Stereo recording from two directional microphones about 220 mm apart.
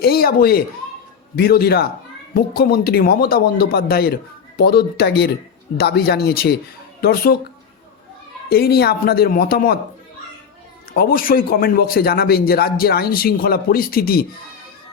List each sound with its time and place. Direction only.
0.0 s a man's voice: 45° left (ahead or behind)
8.4 s a man's voice: 45° left (ahead or behind)
10.9 s a man's voice: 45° left (ahead or behind)